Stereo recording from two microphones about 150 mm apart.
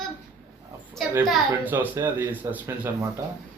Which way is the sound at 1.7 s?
10° right (ahead or behind).